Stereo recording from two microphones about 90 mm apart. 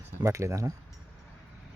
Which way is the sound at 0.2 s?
35° right (ahead or behind).